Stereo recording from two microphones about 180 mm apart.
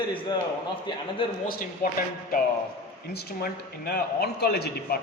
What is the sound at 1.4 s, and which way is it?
Speech, 55° left (ahead or behind).